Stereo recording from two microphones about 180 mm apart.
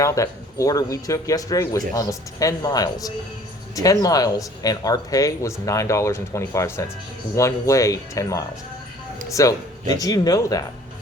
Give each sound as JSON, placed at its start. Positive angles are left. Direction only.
{"t": 0.0, "sound": "speech", "side_deg": 15}